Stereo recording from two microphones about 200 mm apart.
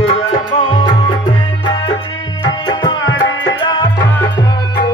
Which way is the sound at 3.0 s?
70° left (ahead or behind).